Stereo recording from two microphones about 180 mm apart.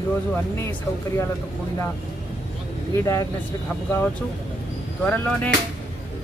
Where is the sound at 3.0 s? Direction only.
15° left (ahead or behind).